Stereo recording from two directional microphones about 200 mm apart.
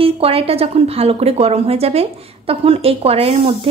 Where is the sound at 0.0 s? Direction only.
30° right (ahead or behind).